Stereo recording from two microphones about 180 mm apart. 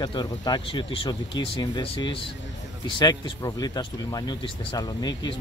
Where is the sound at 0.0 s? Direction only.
25° left (ahead or behind).